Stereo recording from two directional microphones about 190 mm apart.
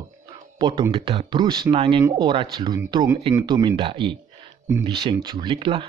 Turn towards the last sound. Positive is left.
turn(degrees=-25)  # may be behind; listen again after turning